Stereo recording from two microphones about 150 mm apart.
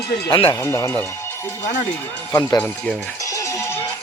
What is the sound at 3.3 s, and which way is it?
Music, 20° left (ahead or behind).